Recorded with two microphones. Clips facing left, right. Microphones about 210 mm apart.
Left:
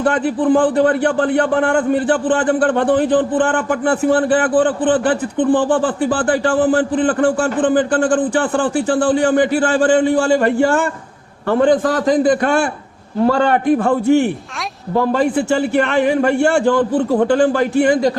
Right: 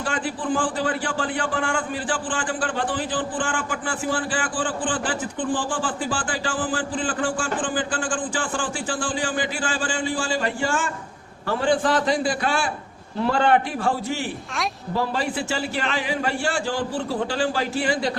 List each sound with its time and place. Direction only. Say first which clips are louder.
0.0 s a man's voice: left 11 dB; 60° left (ahead or behind)
11.7 s a man's voice: left 6 dB; 40° left (ahead or behind); by 12.7 s 55° left (ahead or behind)
13.2 s a man's voice: left 6 dB; 45° left (ahead or behind)